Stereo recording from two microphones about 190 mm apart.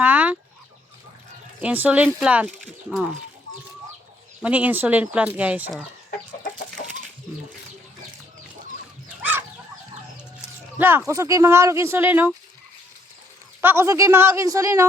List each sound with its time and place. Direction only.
0.0 s fowl: 10° right (ahead or behind)
1.6 s speech: 10° right (ahead or behind)
4.4 s speech: 10° right (ahead or behind)
6.1 s chicken: 50° left (ahead or behind)
10.8 s speech: 10° right (ahead or behind)
13.6 s speech: 10° right (ahead or behind)